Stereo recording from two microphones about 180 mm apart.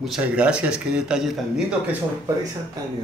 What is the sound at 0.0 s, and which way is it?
A man's voice, 5° right (ahead or behind).